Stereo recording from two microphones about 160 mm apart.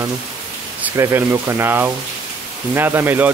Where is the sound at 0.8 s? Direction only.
15° right (ahead or behind).